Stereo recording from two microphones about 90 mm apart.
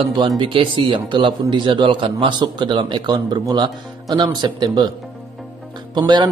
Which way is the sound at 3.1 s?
45° right (ahead or behind).